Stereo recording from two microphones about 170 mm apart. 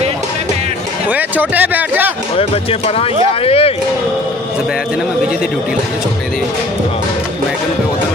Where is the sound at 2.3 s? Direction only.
35° left (ahead or behind).